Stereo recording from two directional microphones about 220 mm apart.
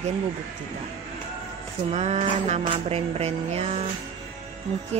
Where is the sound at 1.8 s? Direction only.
30° right (ahead or behind).